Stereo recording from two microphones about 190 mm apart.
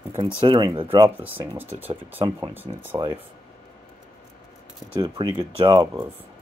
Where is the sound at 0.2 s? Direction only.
25° right (ahead or behind).